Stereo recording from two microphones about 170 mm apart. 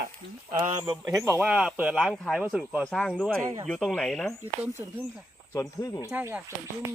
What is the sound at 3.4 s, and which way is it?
Speech, 20° right (ahead or behind).